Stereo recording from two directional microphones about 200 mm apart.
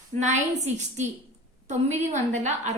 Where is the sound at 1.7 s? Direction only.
35° right (ahead or behind).